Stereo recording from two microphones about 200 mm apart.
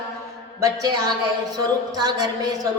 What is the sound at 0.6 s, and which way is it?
A woman's voice, 20° right (ahead or behind).